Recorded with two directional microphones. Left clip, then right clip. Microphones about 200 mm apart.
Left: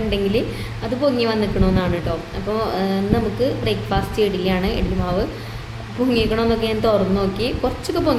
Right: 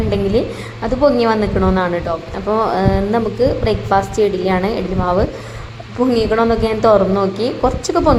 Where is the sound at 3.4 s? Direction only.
15° right (ahead or behind).